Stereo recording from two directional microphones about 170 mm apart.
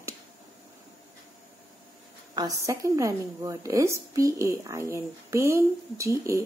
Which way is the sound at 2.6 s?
15° right (ahead or behind).